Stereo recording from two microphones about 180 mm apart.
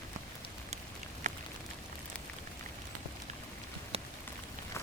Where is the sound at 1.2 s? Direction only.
45° right (ahead or behind).